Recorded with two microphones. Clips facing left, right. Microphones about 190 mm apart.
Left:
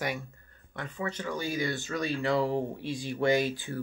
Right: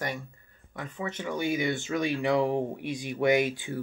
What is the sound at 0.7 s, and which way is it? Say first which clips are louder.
Speech: even; 10° right (ahead or behind).